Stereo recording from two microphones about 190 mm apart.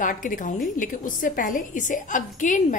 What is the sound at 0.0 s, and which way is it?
A woman's voice, 45° left (ahead or behind).